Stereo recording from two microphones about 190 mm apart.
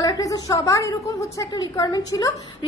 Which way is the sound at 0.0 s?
20° left (ahead or behind).